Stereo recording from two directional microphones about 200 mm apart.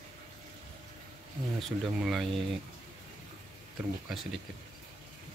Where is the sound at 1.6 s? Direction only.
Centre (ahead or behind).